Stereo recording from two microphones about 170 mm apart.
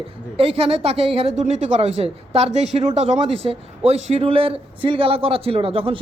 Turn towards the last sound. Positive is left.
turn(degrees=-35)  # may be behind; listen again after turning